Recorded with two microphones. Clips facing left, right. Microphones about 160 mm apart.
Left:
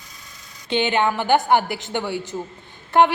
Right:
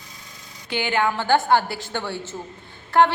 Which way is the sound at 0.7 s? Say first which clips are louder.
Left 3 dB; 20° left (ahead or behind).